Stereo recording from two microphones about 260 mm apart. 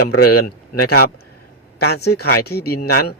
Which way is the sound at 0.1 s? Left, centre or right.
Left.